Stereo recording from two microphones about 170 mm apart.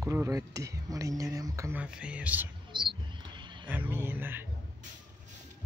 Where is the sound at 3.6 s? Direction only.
10° right (ahead or behind).